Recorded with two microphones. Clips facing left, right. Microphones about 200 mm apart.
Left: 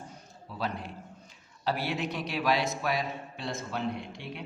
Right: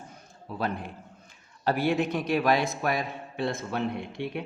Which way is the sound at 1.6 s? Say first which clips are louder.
Right 6 dB; 50° right (ahead or behind).